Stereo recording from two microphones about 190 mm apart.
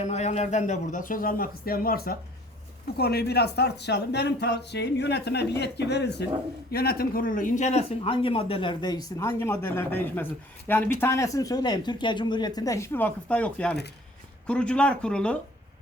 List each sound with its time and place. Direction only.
0.0 s a man's voice: 35° left (ahead or behind); by 15.4 s 5° left (ahead or behind)